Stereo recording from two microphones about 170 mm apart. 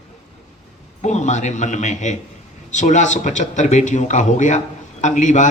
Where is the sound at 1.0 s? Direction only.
45° left (ahead or behind).